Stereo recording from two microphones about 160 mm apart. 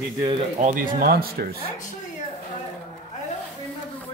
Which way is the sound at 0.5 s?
55° right (ahead or behind).